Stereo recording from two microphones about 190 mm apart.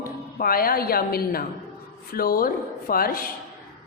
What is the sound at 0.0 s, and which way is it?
A woman's voice, 50° left (ahead or behind).